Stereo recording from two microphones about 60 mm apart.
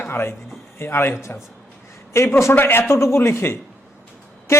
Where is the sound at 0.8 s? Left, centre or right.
Left.